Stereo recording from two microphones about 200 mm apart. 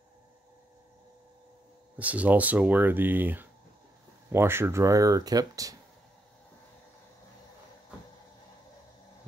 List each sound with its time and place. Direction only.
2.0 s speech: 5° right (ahead or behind)